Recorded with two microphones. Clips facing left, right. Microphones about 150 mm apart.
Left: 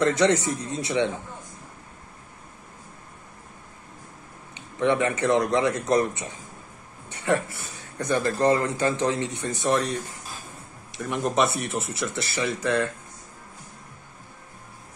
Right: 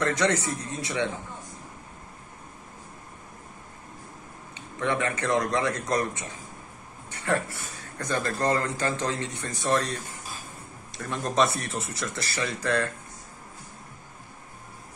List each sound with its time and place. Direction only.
0.0 s a man's voice: 20° left (ahead or behind)
4.6 s a man's voice: 20° left (ahead or behind)
11.0 s a man's voice: 15° left (ahead or behind)